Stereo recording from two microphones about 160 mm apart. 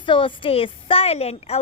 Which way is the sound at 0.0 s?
30° left (ahead or behind).